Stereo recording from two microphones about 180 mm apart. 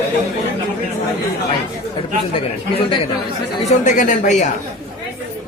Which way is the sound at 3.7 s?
45° left (ahead or behind).